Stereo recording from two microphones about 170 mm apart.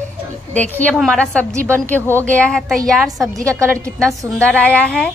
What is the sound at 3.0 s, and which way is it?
A woman's voice, 20° right (ahead or behind).